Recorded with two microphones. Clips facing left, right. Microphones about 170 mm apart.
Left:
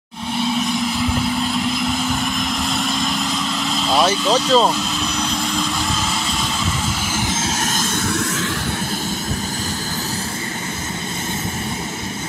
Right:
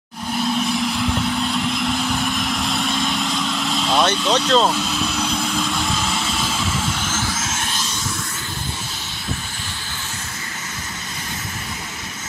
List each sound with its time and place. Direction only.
0.6 s vehicle: centre (ahead or behind)
7.1 s vehicle: 15° left (ahead or behind)
7.3 s vehicle: 35° left (ahead or behind); by 8.5 s 65° left (ahead or behind)